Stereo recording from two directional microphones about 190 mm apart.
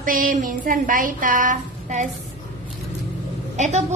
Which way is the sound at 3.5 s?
40° right (ahead or behind).